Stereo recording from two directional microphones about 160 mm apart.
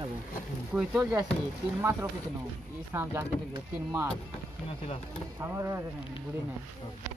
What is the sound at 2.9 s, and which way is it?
Speech, 15° right (ahead or behind).